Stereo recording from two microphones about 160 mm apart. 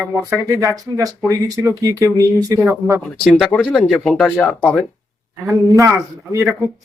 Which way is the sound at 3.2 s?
5° right (ahead or behind).